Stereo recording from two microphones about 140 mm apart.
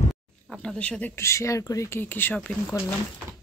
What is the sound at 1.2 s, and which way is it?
Speech, 20° left (ahead or behind).